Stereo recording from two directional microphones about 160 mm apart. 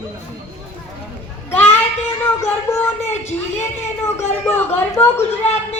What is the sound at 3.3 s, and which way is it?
A woman's voice, 15° left (ahead or behind).